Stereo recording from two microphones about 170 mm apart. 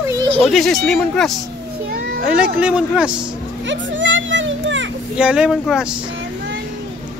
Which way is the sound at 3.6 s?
90° right.